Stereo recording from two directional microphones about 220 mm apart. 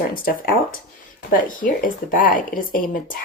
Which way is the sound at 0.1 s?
40° left (ahead or behind).